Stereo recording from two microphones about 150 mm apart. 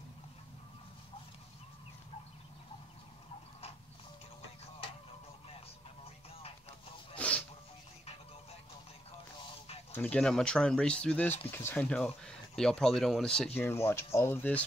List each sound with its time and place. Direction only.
7.2 s a sound: 10° left (ahead or behind)
9.9 s speech: 10° left (ahead or behind)
13.6 s speech: 15° left (ahead or behind)